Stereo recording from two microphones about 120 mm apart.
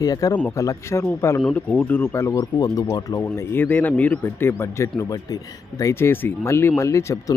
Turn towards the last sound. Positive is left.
turn(degrees=25)  # may be behind; listen again after turning